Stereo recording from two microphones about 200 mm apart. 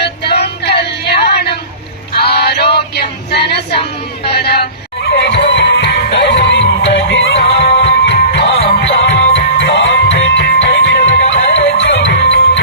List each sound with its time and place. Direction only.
0.0 s music: 55° left (ahead or behind)
2.7 s female singing: 55° left (ahead or behind)
4.3 s music: 50° left (ahead or behind)